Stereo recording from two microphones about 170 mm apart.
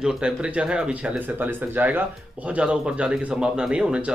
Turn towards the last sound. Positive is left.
turn(degrees=-5)  # may be behind; listen again after turning